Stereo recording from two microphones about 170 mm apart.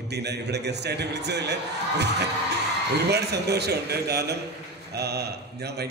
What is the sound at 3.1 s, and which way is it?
A man's voice, 75° right (ahead or behind).